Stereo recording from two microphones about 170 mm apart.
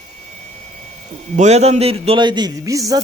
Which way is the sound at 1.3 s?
40° right (ahead or behind).